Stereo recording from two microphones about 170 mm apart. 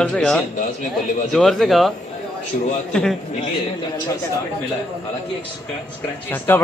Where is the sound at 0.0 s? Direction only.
5° left (ahead or behind).